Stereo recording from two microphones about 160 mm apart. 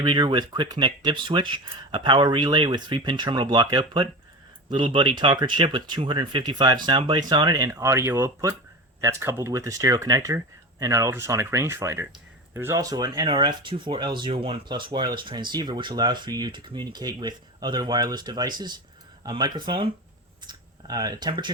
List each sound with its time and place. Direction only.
0.0 s speech: 30° right (ahead or behind)